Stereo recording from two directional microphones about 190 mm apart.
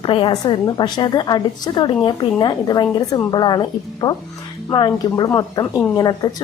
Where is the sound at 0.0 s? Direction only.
25° left (ahead or behind).